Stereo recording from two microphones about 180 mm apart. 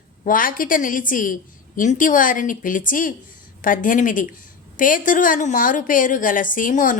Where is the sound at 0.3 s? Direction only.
50° left (ahead or behind).